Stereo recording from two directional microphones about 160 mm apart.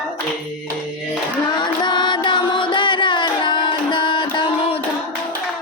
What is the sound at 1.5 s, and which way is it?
Music, 30° left (ahead or behind).